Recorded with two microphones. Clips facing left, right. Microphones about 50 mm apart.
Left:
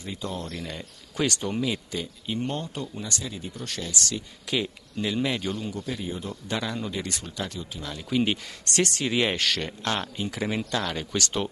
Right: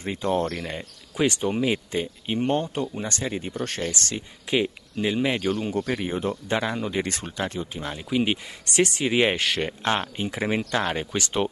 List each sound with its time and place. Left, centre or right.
0.0 s speech: right
1.1 s speech: right
1.7 s speech: right
5.5 s speech: right
6.5 s speech: right
8.1 s speech: centre; by 11.1 s right
11.1 s speech: centre